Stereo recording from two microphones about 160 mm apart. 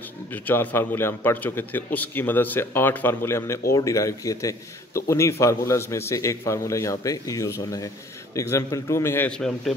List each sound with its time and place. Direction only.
0.3 s a man's voice: 10° left (ahead or behind)